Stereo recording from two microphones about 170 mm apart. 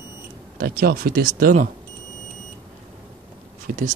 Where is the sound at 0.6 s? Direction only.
60° right (ahead or behind).